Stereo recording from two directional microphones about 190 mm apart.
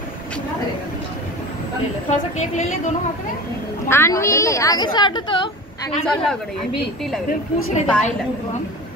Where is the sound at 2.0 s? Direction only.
40° left (ahead or behind).